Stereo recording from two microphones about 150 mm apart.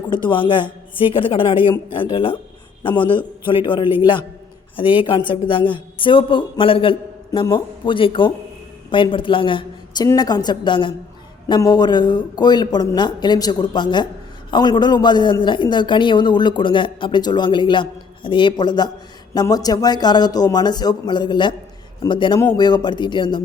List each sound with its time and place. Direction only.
0.1 s a man's voice: 35° left (ahead or behind)
7.3 s a man's voice: 25° left (ahead or behind)